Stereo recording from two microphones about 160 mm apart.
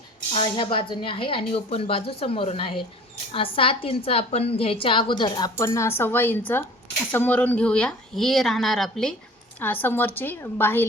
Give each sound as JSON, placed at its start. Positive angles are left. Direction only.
{"t": 0.3, "sound": "a woman's voice", "side_deg": 30}